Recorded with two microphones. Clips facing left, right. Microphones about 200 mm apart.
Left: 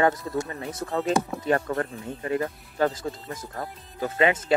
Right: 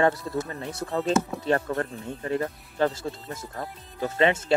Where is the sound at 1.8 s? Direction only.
35° right (ahead or behind).